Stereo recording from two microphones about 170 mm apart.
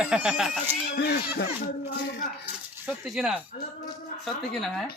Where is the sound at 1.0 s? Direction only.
65° left (ahead or behind).